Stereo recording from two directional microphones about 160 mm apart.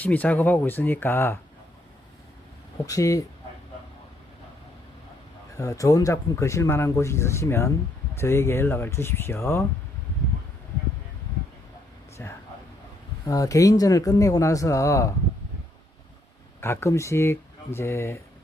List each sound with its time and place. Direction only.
0.0 s speech: 10° left (ahead or behind)
2.8 s speech: 20° left (ahead or behind)
5.5 s speech: 20° left (ahead or behind)
12.2 s speech: 15° left (ahead or behind)
16.6 s speech: 15° left (ahead or behind)